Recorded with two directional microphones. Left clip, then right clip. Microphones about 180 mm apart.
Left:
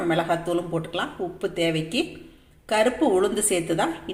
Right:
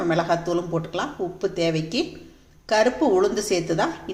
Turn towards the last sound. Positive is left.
turn(degrees=0)  # may be behind; listen again after turning